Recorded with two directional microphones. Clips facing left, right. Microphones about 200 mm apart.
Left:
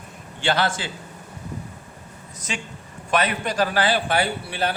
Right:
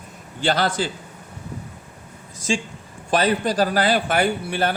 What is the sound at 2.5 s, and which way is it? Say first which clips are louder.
A man's voice: right 8 dB; 30° right (ahead or behind).